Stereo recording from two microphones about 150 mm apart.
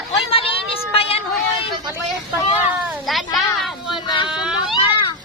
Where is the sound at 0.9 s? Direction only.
40° left (ahead or behind).